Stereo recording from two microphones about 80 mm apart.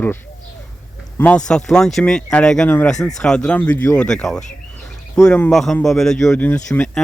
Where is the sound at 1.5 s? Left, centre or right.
Centre.